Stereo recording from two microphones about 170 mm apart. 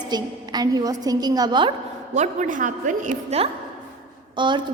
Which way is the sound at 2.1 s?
45° right (ahead or behind).